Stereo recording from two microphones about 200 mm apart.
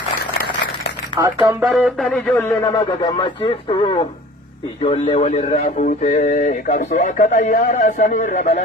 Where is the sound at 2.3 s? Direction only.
15° left (ahead or behind).